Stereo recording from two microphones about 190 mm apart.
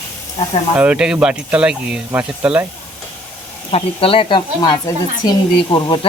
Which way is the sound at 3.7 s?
30° left (ahead or behind).